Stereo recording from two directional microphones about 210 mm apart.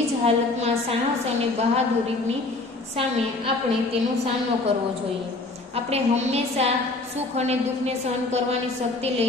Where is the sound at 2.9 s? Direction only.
25° right (ahead or behind).